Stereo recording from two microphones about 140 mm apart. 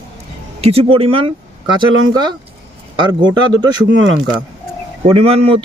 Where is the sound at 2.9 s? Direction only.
35° right (ahead or behind).